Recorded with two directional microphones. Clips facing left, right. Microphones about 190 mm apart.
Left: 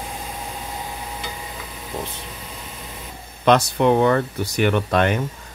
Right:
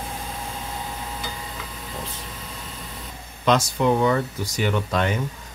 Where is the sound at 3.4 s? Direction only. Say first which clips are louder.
Left 4 dB; 60° left (ahead or behind).